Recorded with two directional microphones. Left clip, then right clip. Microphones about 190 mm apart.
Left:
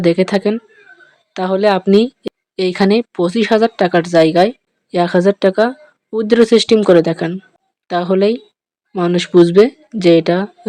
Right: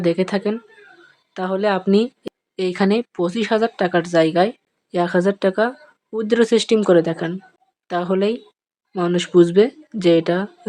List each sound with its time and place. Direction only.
0.0 s a woman's voice: 20° left (ahead or behind)